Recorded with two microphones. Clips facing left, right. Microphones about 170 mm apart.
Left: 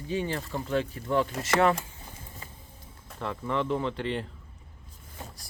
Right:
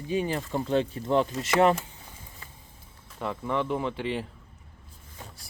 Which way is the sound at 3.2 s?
5° right (ahead or behind).